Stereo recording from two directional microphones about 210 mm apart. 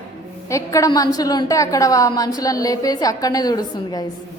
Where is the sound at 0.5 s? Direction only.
15° left (ahead or behind).